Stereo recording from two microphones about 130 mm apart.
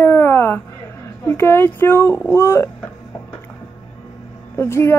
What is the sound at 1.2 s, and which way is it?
A woman's voice, 15° left (ahead or behind).